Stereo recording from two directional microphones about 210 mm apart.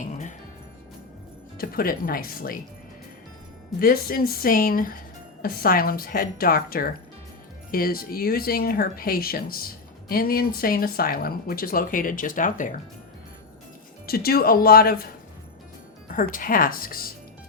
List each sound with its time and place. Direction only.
0.0 s music: 35° left (ahead or behind)
1.5 s speech: 45° left (ahead or behind)
3.8 s speech: 45° left (ahead or behind)
14.1 s speech: 45° left (ahead or behind)
16.0 s speech: 40° left (ahead or behind)